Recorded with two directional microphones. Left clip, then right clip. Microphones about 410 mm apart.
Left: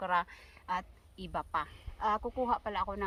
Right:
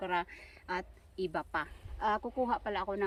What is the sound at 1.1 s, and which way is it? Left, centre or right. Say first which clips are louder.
Speech: even; left.